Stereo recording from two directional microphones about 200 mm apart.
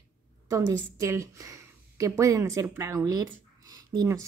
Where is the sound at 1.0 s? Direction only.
15° right (ahead or behind).